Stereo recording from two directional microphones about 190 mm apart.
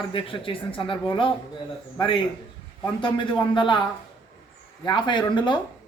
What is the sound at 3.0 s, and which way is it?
Speech, 25° left (ahead or behind).